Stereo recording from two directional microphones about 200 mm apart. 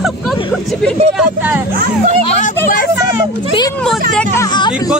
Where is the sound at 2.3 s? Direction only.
40° left (ahead or behind).